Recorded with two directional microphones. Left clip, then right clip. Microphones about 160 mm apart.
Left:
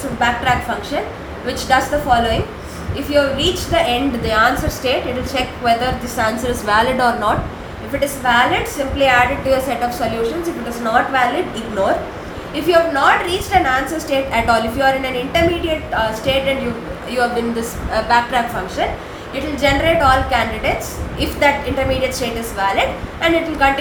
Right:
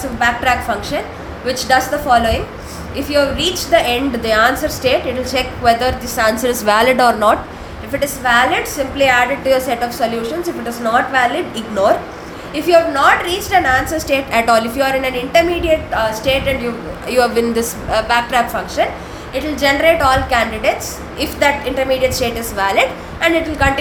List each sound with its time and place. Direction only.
0.2 s a woman's voice: 50° right (ahead or behind)
7.9 s a woman's voice: 45° right (ahead or behind)
12.6 s a woman's voice: 45° right (ahead or behind)